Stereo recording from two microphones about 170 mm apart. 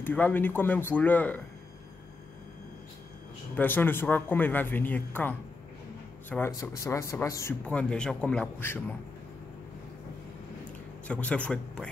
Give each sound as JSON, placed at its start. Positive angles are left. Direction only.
{"t": 0.0, "sound": "speech", "side_deg": 10}
{"t": 3.5, "sound": "speech", "side_deg": 10}
{"t": 7.6, "sound": "speech", "side_deg": 5}
{"t": 11.1, "sound": "speech", "side_deg": 10}